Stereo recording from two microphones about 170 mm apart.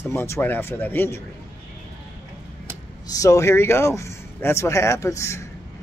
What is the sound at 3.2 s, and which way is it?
Speech, 20° left (ahead or behind).